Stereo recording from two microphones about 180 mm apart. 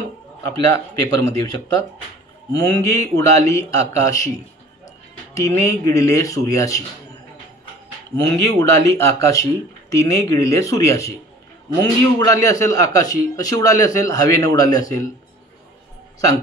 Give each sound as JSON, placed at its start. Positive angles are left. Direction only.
{"t": 0.4, "sound": "a man's voice", "side_deg": 15}
{"t": 5.3, "sound": "speech", "side_deg": 15}
{"t": 8.5, "sound": "a man's voice", "side_deg": 15}